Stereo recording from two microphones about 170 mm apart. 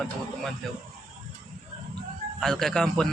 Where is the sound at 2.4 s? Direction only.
5° left (ahead or behind).